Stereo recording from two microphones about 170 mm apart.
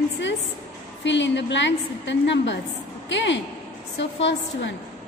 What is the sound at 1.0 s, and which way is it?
A woman's voice, 90° left.